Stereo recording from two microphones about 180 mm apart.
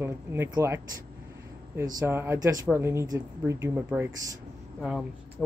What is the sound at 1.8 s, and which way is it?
Speech, 15° right (ahead or behind).